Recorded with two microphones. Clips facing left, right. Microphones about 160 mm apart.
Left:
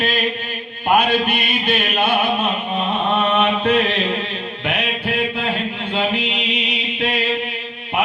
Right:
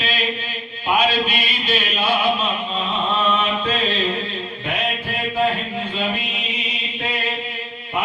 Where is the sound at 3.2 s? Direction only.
65° left (ahead or behind).